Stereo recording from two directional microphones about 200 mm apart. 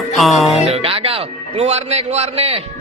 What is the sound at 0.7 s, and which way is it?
A man's voice, 30° right (ahead or behind).